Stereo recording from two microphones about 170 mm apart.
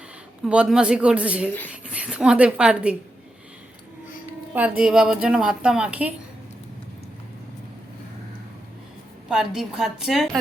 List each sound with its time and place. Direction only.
0.4 s speech: 5° right (ahead or behind)
4.8 s a woman's voice: 5° right (ahead or behind)
9.3 s a woman's voice: 5° right (ahead or behind)